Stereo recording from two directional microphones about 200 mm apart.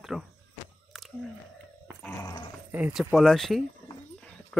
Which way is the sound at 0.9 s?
Centre (ahead or behind).